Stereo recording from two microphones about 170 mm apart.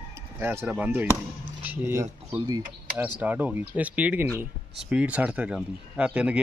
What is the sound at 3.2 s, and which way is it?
Speech, 10° right (ahead or behind).